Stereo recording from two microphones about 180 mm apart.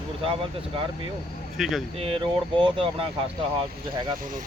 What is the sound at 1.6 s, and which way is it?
Speech, centre (ahead or behind).